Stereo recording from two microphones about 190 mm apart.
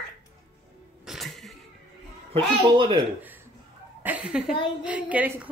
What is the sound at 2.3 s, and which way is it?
Speech, 25° right (ahead or behind).